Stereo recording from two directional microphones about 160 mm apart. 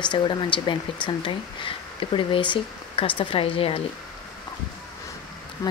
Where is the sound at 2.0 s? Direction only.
35° left (ahead or behind).